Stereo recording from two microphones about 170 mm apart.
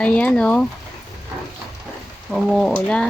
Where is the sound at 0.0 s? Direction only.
5° left (ahead or behind).